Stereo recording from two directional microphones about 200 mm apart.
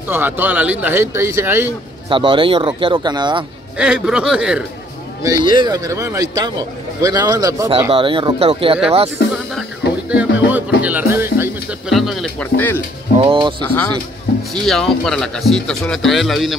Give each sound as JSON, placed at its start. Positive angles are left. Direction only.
{"t": 0.1, "sound": "speech", "side_deg": -10}
{"t": 2.0, "sound": "speech", "side_deg": -25}
{"t": 3.7, "sound": "speech", "side_deg": -5}
{"t": 5.2, "sound": "speech", "side_deg": -20}
{"t": 9.6, "sound": "music", "side_deg": -5}
{"t": 11.9, "sound": "speech", "side_deg": 0}
{"t": 13.2, "sound": "speech", "side_deg": -25}
{"t": 14.5, "sound": "speech", "side_deg": 0}